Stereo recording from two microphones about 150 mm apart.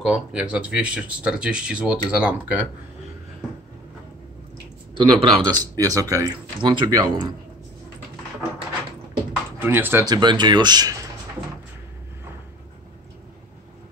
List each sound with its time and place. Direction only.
0.0 s speech: 5° right (ahead or behind)
4.9 s speech: 30° right (ahead or behind)
9.6 s speech: 15° right (ahead or behind)
10.0 s speech: 30° right (ahead or behind)